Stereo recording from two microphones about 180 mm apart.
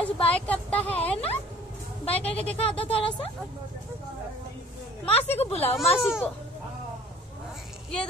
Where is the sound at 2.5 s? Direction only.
30° left (ahead or behind).